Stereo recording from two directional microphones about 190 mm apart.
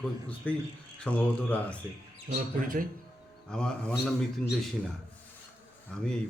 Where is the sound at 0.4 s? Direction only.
5° left (ahead or behind).